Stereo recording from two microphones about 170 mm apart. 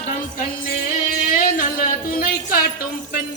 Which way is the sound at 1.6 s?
55° left (ahead or behind).